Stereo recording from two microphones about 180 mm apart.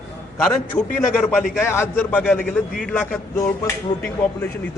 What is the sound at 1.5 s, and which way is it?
Speech, 15° left (ahead or behind).